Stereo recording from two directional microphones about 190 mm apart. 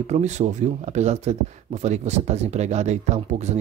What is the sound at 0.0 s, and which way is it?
Speech, 35° right (ahead or behind).